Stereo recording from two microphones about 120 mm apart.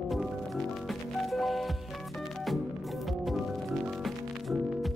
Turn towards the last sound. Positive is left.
turn(degrees=0)  # may be behind; listen again after turning